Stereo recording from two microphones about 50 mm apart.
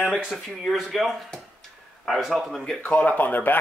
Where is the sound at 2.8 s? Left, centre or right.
Left.